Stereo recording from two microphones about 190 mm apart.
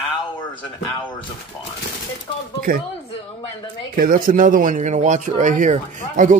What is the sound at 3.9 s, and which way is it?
Speech, 50° right (ahead or behind).